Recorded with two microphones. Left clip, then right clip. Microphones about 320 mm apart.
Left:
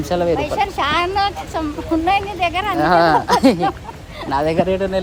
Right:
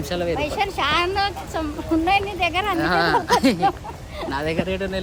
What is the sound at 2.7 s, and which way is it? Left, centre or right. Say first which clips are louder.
Speech: left 9 dB; centre.